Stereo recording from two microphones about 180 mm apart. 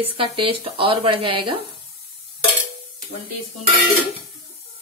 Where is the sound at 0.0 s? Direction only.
30° right (ahead or behind).